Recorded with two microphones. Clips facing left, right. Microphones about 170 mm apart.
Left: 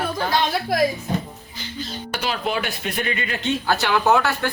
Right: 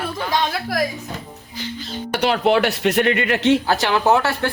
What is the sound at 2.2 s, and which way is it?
Speech, 70° right (ahead or behind).